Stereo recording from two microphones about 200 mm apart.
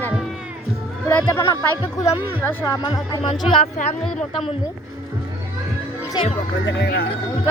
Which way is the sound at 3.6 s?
35° left (ahead or behind).